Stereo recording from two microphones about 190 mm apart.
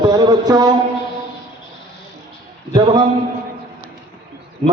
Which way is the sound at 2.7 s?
25° right (ahead or behind).